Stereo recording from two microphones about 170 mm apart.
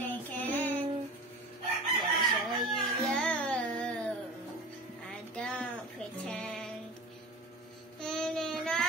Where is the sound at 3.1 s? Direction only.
5° left (ahead or behind).